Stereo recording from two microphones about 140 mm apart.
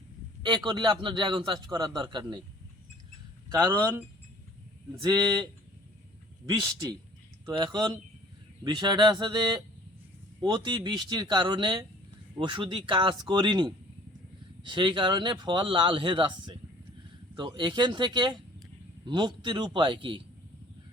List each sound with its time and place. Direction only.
0.4 s speech: 35° right (ahead or behind)
3.6 s speech: 15° right (ahead or behind)
4.9 s speech: 30° right (ahead or behind)